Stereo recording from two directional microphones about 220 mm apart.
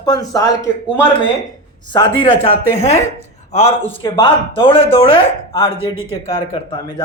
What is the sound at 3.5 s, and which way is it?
A man's voice, 25° left (ahead or behind).